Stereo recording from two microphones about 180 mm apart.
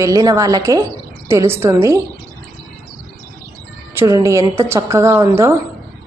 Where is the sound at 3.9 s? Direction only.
15° right (ahead or behind).